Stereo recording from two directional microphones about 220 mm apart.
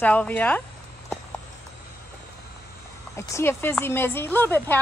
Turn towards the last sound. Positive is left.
turn(degrees=10)  # may be behind; listen again after turning